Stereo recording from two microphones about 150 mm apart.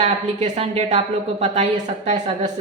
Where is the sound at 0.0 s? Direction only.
50° right (ahead or behind).